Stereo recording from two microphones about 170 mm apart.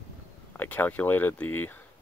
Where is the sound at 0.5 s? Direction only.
10° left (ahead or behind).